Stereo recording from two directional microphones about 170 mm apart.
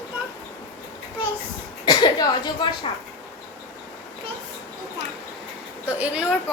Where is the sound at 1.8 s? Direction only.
25° left (ahead or behind).